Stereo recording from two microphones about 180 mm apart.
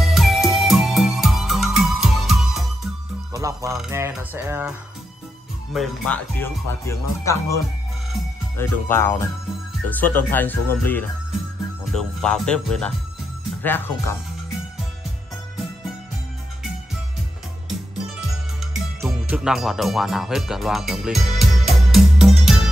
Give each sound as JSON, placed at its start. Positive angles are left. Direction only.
{"t": 0.0, "sound": "music", "side_deg": 0}
{"t": 3.3, "sound": "speech", "side_deg": -20}
{"t": 4.1, "sound": "music", "side_deg": -10}
{"t": 5.7, "sound": "speech", "side_deg": 0}
{"t": 6.3, "sound": "speech", "side_deg": 15}
{"t": 17.6, "sound": "music", "side_deg": 0}